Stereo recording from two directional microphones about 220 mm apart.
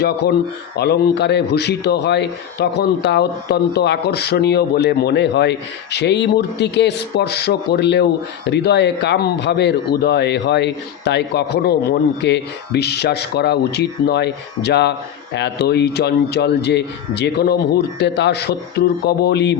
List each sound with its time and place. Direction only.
0.0 s speech: 50° left (ahead or behind)